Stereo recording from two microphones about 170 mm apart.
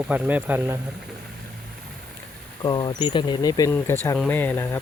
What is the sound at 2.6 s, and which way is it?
Speech, 25° left (ahead or behind).